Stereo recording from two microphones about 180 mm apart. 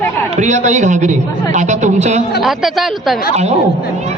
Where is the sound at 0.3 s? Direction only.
40° right (ahead or behind).